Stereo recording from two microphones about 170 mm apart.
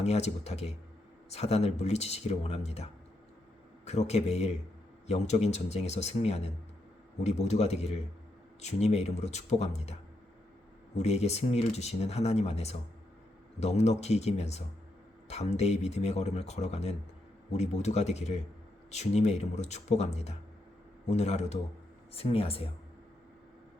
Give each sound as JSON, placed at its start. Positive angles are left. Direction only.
{"t": 0.0, "sound": "speech", "side_deg": 40}